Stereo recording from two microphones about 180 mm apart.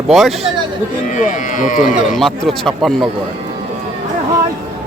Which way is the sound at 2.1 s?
Centre (ahead or behind).